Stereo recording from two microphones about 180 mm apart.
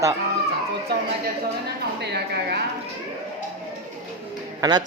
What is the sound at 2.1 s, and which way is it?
Speech, 65° right (ahead or behind).